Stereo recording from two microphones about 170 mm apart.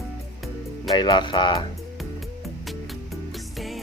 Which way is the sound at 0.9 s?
25° left (ahead or behind).